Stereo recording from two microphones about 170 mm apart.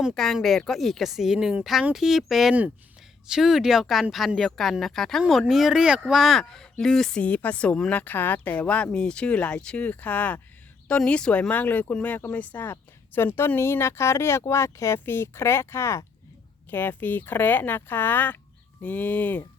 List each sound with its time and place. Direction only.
0.0 s speech: centre (ahead or behind)